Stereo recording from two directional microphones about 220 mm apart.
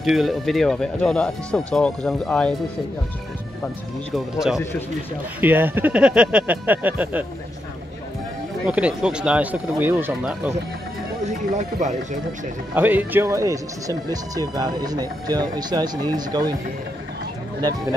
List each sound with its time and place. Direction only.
0.0 s speech: centre (ahead or behind)
4.1 s speech: centre (ahead or behind)
8.6 s speech: 5° right (ahead or behind)
11.2 s speech: 30° right (ahead or behind)
12.7 s speech: 10° right (ahead or behind)
17.6 s speech: 20° right (ahead or behind)